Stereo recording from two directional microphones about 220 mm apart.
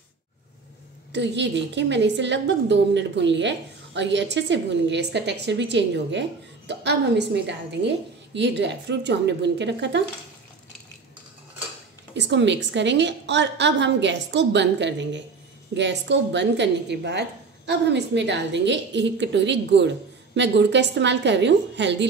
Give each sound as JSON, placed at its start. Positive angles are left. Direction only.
{"t": 1.1, "sound": "a woman's voice", "side_deg": -50}
{"t": 12.2, "sound": "a woman's voice", "side_deg": -55}